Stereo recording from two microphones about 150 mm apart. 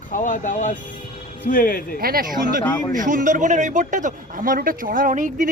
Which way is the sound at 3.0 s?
60° right (ahead or behind).